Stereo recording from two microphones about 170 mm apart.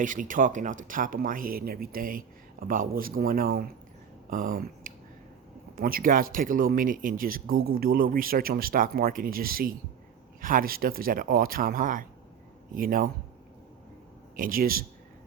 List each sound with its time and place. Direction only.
0.0 s speech: 50° right (ahead or behind)
14.3 s speech: 55° right (ahead or behind)